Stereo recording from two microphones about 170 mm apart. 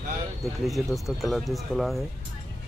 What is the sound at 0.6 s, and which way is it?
Speech, centre (ahead or behind).